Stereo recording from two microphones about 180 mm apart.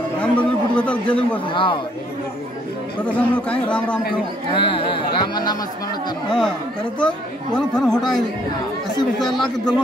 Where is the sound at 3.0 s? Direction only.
10° left (ahead or behind).